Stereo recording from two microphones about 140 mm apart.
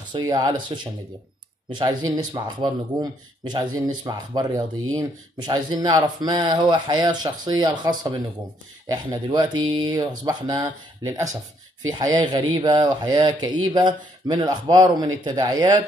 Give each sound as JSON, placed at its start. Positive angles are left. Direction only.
{"t": 0.1, "sound": "speech", "side_deg": -30}